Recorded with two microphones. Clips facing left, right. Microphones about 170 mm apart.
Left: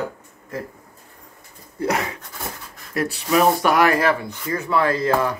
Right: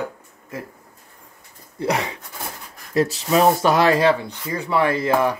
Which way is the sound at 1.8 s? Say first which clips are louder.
Even; 20° right (ahead or behind).